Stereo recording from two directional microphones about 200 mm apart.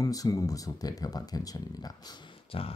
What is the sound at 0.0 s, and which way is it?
Speech, 15° left (ahead or behind).